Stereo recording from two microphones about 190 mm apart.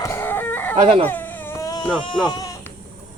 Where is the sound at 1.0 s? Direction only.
10° left (ahead or behind).